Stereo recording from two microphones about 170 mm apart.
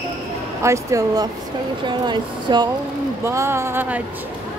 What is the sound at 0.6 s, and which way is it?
Speech, 15° right (ahead or behind).